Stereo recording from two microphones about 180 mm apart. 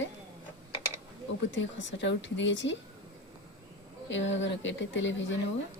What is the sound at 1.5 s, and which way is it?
A woman's voice, 90° left.